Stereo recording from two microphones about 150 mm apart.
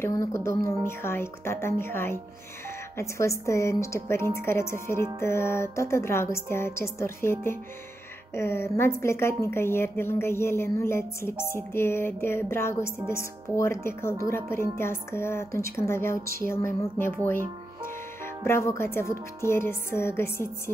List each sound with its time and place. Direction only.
0.0 s a woman's voice: 20° left (ahead or behind)
17.3 s music: 15° left (ahead or behind)
18.9 s a woman's voice: 15° left (ahead or behind)